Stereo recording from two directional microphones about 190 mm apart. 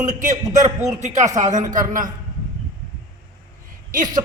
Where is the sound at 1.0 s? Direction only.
40° right (ahead or behind).